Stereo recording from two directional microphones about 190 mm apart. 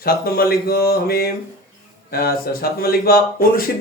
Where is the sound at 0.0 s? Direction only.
50° left (ahead or behind).